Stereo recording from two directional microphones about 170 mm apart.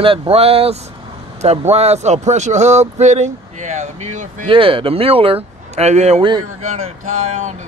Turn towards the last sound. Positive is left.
turn(degrees=-45)  # may be behind; listen again after turning